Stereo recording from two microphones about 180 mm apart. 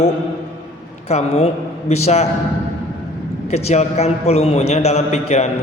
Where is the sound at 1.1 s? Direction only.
35° left (ahead or behind).